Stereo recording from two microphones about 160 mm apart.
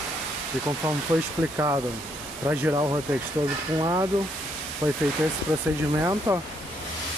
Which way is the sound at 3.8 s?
25° right (ahead or behind).